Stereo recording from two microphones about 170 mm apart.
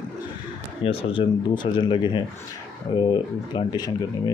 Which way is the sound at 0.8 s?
30° left (ahead or behind).